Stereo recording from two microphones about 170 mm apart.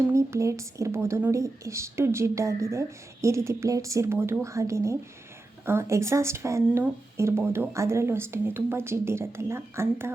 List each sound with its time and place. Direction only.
0.1 s speech: 15° right (ahead or behind)